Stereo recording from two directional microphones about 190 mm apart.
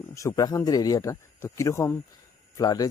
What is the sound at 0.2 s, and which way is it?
Speech, 20° left (ahead or behind).